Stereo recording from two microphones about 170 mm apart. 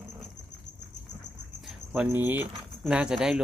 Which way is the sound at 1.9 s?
10° right (ahead or behind).